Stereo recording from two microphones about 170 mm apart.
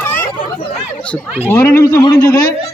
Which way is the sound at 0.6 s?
40° left (ahead or behind).